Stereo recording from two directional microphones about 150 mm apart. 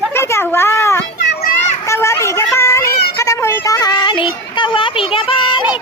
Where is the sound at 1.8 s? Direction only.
20° left (ahead or behind).